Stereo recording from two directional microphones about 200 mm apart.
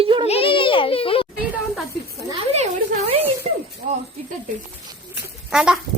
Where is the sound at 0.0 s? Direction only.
25° right (ahead or behind).